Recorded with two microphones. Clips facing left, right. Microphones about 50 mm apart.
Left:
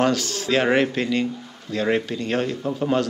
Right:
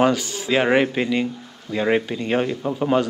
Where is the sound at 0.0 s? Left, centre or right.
Centre.